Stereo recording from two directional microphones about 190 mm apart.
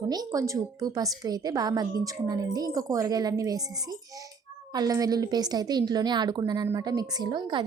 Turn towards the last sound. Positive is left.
turn(degrees=-25)  # may be behind; listen again after turning